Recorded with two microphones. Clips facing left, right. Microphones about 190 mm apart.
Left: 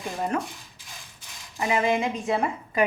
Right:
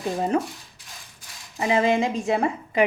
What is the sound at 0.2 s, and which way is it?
Speech, 30° right (ahead or behind).